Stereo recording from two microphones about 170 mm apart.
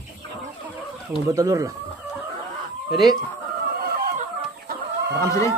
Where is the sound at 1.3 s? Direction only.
20° right (ahead or behind).